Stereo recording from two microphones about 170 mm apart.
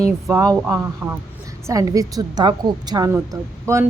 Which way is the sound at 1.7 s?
20° right (ahead or behind).